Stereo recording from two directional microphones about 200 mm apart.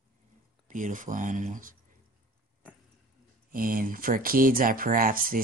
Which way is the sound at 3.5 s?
45° right (ahead or behind).